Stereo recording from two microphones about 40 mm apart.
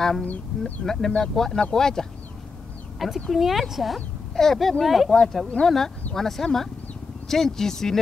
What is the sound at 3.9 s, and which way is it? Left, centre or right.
Speech, centre.